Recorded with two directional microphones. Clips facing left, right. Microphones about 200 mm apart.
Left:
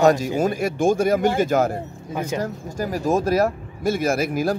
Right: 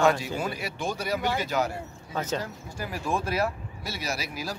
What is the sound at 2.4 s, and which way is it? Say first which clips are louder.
Speech: left 8 dB; 45° left (ahead or behind).